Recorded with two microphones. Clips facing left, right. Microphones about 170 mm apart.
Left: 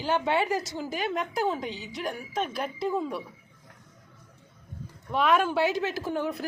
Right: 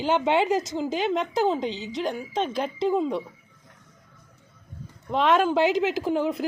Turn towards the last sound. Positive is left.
turn(degrees=-15)  # may be behind; listen again after turning